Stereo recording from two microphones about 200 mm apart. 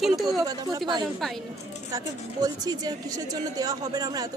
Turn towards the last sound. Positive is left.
turn(degrees=-20)  # may be behind; listen again after turning